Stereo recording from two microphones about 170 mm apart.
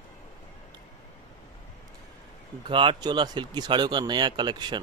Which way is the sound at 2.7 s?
30° right (ahead or behind).